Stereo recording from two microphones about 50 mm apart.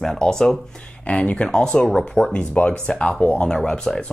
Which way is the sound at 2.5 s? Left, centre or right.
Left.